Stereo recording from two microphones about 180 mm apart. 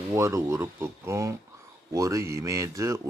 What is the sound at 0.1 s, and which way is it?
Speech, 15° right (ahead or behind).